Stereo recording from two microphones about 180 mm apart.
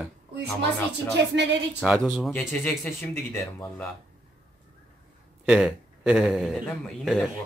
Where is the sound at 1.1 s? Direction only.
75° right (ahead or behind).